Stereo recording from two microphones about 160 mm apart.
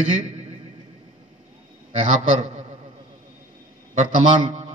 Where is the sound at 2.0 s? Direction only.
45° right (ahead or behind).